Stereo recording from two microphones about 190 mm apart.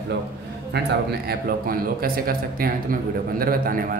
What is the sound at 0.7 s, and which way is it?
A man's voice, 55° right (ahead or behind).